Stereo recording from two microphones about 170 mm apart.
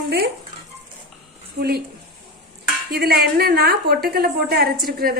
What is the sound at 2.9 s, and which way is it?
A woman's voice, 65° right (ahead or behind).